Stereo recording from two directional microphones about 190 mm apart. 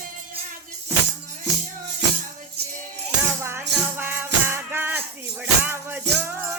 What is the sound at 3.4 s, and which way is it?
Music, 15° right (ahead or behind).